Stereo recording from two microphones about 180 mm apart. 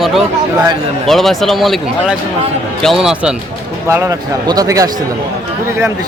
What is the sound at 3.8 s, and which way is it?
Speech, 15° right (ahead or behind).